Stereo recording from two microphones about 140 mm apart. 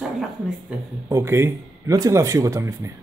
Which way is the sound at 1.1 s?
20° right (ahead or behind).